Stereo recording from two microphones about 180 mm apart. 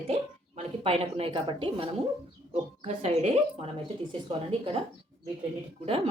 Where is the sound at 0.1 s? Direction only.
35° right (ahead or behind).